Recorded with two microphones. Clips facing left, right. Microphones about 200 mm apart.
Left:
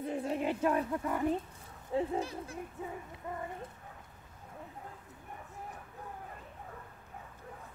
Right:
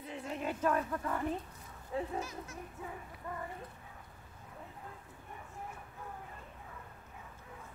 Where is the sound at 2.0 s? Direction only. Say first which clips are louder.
Left 5 dB; 30° left (ahead or behind).